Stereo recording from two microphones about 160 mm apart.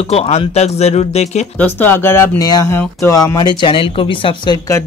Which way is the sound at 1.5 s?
10° left (ahead or behind).